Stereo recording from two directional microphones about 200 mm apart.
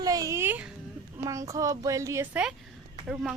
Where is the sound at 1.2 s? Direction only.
15° right (ahead or behind).